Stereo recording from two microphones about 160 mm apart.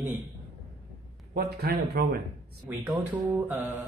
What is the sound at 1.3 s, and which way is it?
Speech, 75° right (ahead or behind).